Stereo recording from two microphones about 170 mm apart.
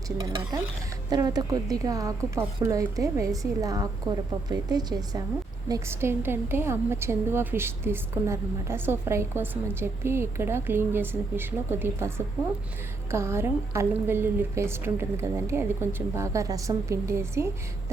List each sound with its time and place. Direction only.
1.1 s a woman's voice: 25° right (ahead or behind)